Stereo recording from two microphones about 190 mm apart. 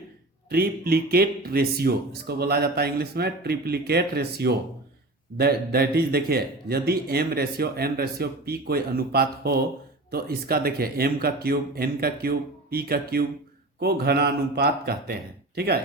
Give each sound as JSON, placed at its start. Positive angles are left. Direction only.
{"t": 0.5, "sound": "speech", "side_deg": -50}